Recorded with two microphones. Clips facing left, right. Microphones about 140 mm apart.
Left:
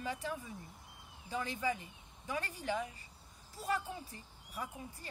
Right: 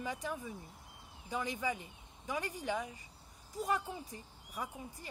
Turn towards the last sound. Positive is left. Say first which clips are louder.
# right 1 dB
turn(degrees=-15)  # may be behind; listen again after turning